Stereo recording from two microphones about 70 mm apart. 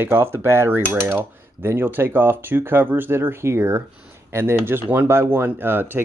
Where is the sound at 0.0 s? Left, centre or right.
Right.